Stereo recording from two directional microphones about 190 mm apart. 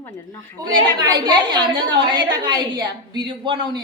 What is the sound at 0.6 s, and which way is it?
A woman's voice, 20° right (ahead or behind).